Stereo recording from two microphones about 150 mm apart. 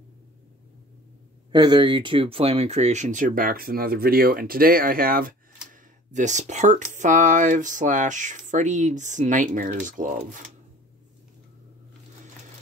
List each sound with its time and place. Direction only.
1.5 s speech: 30° right (ahead or behind); by 10.5 s 60° right (ahead or behind)